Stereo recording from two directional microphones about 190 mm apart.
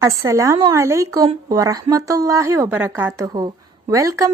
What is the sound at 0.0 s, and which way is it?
A woman's voice, 15° right (ahead or behind).